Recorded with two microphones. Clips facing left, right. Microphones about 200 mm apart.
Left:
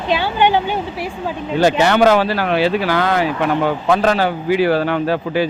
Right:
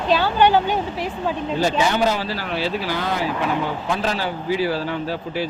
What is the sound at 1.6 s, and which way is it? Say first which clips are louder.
A man's voice: left 7 dB; 70° left (ahead or behind).